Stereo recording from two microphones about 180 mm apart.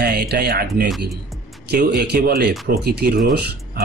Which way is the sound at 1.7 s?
60° right (ahead or behind).